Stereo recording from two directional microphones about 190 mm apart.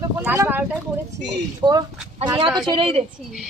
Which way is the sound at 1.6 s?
20° right (ahead or behind).